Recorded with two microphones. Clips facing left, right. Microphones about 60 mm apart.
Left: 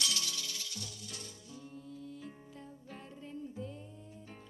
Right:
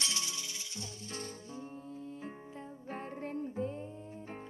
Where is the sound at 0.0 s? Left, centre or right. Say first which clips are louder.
Left 1 dB; right.